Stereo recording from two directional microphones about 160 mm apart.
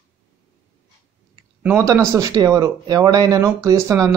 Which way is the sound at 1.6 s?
10° right (ahead or behind).